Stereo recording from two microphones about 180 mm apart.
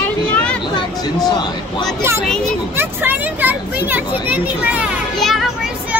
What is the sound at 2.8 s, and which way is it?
Speech, 10° right (ahead or behind).